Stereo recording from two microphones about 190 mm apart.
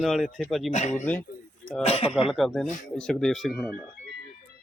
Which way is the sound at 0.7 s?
35° left (ahead or behind).